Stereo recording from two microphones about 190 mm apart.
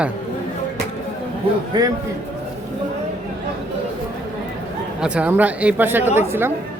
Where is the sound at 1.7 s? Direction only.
20° right (ahead or behind).